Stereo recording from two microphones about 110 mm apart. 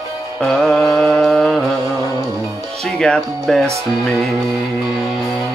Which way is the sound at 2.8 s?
5° left (ahead or behind).